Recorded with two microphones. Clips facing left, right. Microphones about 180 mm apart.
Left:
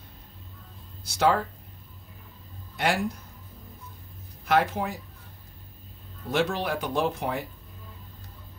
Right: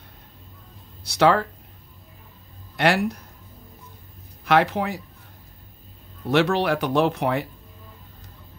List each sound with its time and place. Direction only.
1.0 s speech: 70° right (ahead or behind)
2.8 s speech: 70° right (ahead or behind)
4.5 s speech: 75° right (ahead or behind)
6.3 s speech: 75° right (ahead or behind)